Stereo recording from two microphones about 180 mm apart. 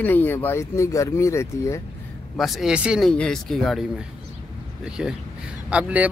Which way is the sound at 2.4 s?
Centre (ahead or behind).